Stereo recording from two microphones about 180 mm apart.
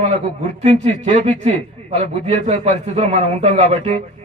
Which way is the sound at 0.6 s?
35° right (ahead or behind).